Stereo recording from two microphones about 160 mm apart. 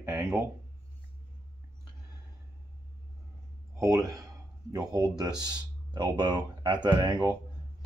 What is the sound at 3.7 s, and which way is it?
Speech, 20° right (ahead or behind).